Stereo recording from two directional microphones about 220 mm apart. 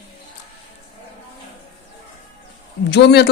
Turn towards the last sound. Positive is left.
turn(degrees=50)  # may be behind; listen again after turning